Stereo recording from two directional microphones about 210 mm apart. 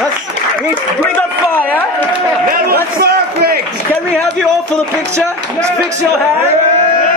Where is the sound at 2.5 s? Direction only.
45° right (ahead or behind).